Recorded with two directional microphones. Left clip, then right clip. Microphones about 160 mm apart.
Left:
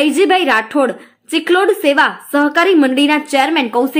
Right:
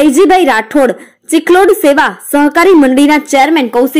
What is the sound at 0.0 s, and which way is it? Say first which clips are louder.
A woman's voice: right 6 dB; 25° right (ahead or behind).